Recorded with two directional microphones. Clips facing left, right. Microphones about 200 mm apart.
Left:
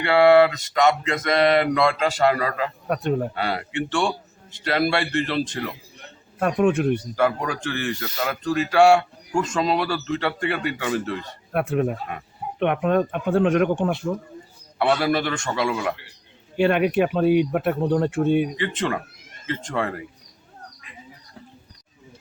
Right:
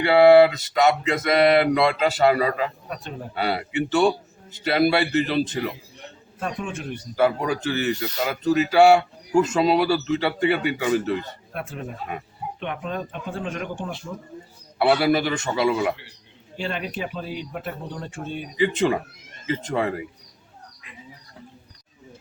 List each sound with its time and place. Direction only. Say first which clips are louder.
0.0 s speech: right 2 dB; 5° right (ahead or behind)
2.8 s speech: left 11 dB; 60° left (ahead or behind)
3.3 s speech: right 2 dB; 5° right (ahead or behind)
6.4 s speech: left 11 dB; 60° left (ahead or behind)
7.2 s speech: right 1 dB; 5° right (ahead or behind)
11.5 s speech: left 11 dB; 60° left (ahead or behind)
14.8 s speech: right 2 dB; 5° right (ahead or behind)
16.6 s speech: left 11 dB; 60° left (ahead or behind)
18.6 s speech: right 4 dB; 10° right (ahead or behind)